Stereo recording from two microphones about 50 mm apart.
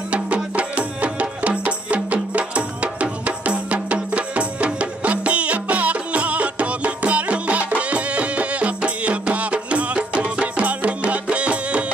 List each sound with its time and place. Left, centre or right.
0.1 s music: right